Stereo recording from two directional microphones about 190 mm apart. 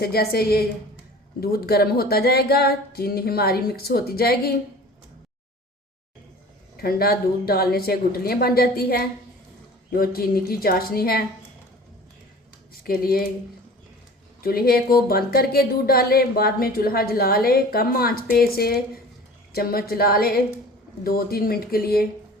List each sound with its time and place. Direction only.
0.0 s a woman's voice: 55° left (ahead or behind)
6.7 s speech: 55° left (ahead or behind)
12.8 s speech: 50° left (ahead or behind)
14.4 s speech: 50° left (ahead or behind)